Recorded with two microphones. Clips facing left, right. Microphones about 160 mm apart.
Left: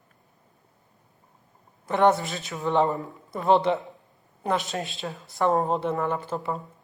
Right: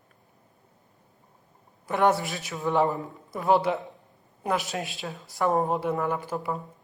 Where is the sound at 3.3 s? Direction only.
5° right (ahead or behind).